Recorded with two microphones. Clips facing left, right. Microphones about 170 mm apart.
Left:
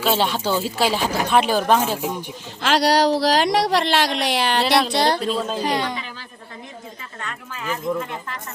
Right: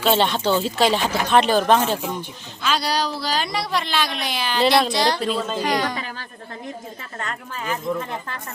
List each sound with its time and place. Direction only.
0.0 s speech: 5° left (ahead or behind)
2.6 s speech: 90° left; by 4.6 s 70° left (ahead or behind)
4.9 s speech: 60° left (ahead or behind)
5.2 s speech: centre (ahead or behind)
5.6 s speech: 25° left (ahead or behind)
6.0 s speech: 45° right (ahead or behind)